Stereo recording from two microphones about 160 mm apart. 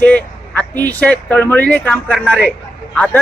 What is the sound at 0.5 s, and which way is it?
A man's voice, 10° left (ahead or behind).